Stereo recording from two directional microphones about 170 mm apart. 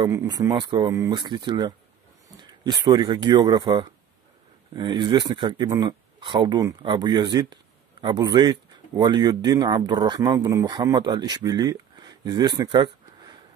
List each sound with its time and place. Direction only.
0.0 s speech: 20° right (ahead or behind)